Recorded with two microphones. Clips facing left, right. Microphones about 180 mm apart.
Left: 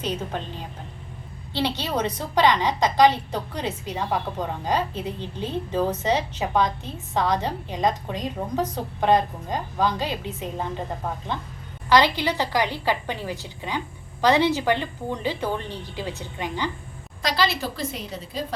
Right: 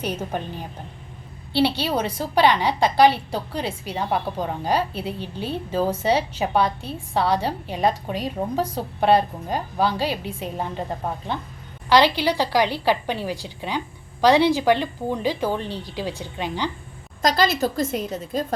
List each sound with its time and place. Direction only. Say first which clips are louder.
0.0 s a woman's voice: right 1 dB; 10° right (ahead or behind)
1.5 s a woman's voice: right 6 dB; 20° left (ahead or behind)
1.8 s a woman's voice: right 2 dB; 10° right (ahead or behind)
12.0 s a woman's voice: right 3 dB; 15° right (ahead or behind)
17.2 s a woman's voice: right 5 dB; 45° right (ahead or behind)